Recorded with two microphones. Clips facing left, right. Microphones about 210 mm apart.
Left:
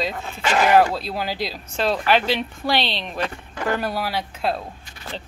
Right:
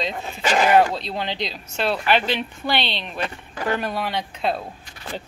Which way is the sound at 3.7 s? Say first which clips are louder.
Left 1 dB; 5° left (ahead or behind).